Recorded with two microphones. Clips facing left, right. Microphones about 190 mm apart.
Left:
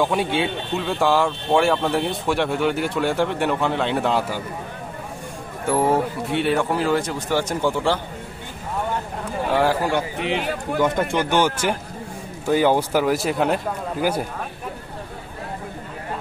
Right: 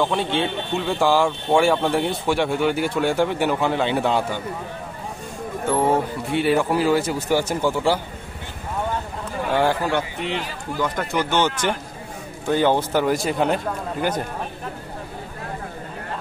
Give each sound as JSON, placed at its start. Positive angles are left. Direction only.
{"t": 0.0, "sound": "speech", "side_deg": 10}
{"t": 6.3, "sound": "speech", "side_deg": -5}
{"t": 9.5, "sound": "a man's voice", "side_deg": 0}
{"t": 10.4, "sound": "speech", "side_deg": 65}
{"t": 11.0, "sound": "speech", "side_deg": 25}
{"t": 11.3, "sound": "a man's voice", "side_deg": 10}